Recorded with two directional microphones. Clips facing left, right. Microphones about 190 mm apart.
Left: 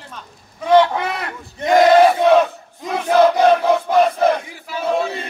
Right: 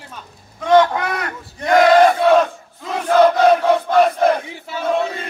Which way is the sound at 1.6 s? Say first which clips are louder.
Even; 15° left (ahead or behind).